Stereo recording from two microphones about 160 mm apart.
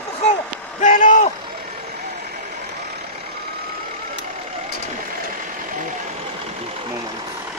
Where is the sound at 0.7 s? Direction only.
50° left (ahead or behind).